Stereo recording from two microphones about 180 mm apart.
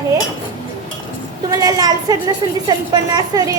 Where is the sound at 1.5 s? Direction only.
20° right (ahead or behind).